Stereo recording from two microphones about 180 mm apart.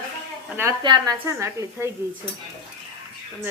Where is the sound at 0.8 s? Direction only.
25° right (ahead or behind).